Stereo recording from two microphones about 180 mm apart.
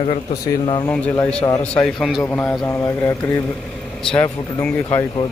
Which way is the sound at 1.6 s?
5° left (ahead or behind).